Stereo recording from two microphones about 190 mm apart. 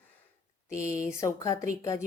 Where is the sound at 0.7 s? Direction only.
45° left (ahead or behind).